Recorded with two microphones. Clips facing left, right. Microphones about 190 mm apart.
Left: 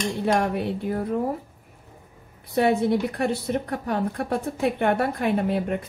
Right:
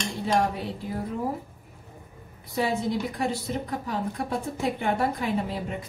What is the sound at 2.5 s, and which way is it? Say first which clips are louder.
A woman's voice: left 6 dB; 60° left (ahead or behind).